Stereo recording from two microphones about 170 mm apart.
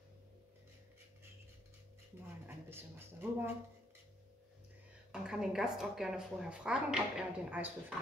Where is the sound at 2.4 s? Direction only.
15° right (ahead or behind).